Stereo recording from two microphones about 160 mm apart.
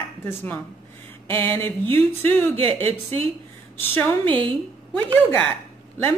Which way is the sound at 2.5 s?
40° right (ahead or behind).